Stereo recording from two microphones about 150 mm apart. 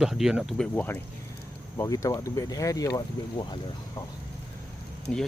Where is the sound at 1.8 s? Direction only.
20° left (ahead or behind).